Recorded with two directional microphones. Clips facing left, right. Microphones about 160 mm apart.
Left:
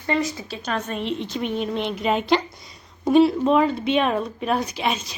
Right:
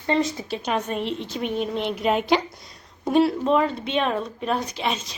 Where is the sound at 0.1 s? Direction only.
25° right (ahead or behind).